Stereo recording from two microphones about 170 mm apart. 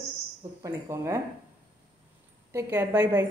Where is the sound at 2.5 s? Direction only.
10° right (ahead or behind).